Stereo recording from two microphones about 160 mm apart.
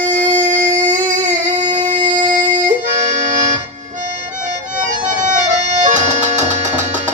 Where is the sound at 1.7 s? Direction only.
50° right (ahead or behind).